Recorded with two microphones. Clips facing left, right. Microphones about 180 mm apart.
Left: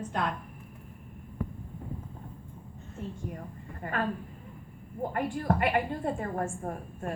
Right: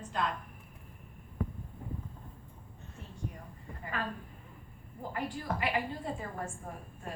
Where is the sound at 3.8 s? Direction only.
55° left (ahead or behind).